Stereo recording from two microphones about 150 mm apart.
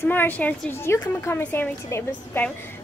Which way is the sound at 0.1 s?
10° left (ahead or behind).